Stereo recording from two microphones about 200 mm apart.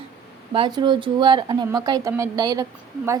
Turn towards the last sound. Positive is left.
turn(degrees=-15)  # may be behind; listen again after turning